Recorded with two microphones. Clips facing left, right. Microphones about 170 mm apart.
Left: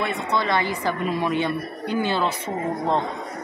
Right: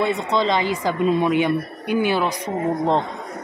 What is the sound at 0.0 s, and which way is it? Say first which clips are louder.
A woman's voice: right 4 dB; 20° right (ahead or behind).